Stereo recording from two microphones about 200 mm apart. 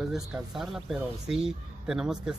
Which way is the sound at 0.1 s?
Centre (ahead or behind).